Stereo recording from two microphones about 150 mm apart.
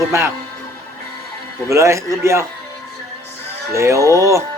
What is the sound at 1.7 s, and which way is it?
Speech, 20° right (ahead or behind).